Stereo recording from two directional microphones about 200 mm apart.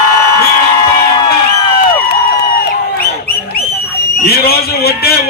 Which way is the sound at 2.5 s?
50° left (ahead or behind).